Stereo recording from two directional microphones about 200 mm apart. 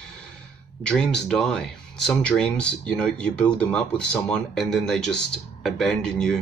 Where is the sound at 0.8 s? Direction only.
5° left (ahead or behind).